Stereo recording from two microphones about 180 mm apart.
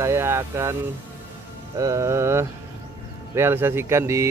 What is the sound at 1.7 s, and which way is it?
Speech, 15° right (ahead or behind).